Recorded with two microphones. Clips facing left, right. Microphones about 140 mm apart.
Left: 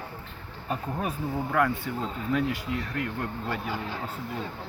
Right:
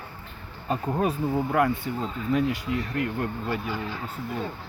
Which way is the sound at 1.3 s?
15° right (ahead or behind).